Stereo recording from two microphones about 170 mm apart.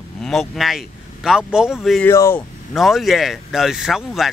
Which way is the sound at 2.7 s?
Centre (ahead or behind).